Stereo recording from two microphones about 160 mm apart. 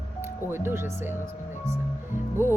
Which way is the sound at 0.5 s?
15° right (ahead or behind).